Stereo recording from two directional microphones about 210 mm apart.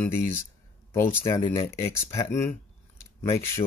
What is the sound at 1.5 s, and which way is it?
Speech, 15° left (ahead or behind).